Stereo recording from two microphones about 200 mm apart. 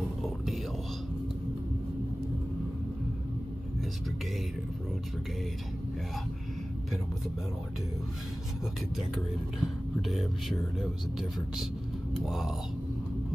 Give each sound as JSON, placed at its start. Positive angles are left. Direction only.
{"t": 8.9, "sound": "speech", "side_deg": 0}